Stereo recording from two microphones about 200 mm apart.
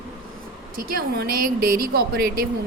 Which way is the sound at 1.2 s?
50° right (ahead or behind).